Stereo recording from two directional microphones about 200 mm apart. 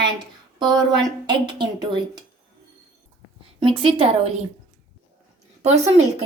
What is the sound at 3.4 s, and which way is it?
A woman's voice, 25° right (ahead or behind).